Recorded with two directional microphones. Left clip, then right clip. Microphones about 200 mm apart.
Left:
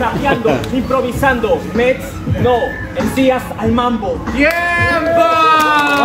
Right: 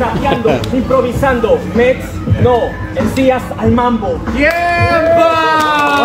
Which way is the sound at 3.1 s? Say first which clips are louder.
Right 1 dB; 5° left (ahead or behind).